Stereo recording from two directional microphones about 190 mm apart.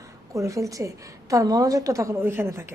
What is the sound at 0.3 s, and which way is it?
A woman's voice, 15° right (ahead or behind).